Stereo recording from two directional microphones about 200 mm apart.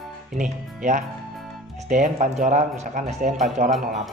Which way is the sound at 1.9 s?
40° right (ahead or behind).